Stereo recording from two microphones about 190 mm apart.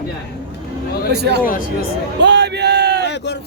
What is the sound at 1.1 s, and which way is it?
Speech, 60° right (ahead or behind).